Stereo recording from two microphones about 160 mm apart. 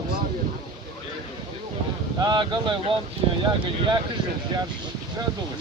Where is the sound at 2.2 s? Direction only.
30° right (ahead or behind).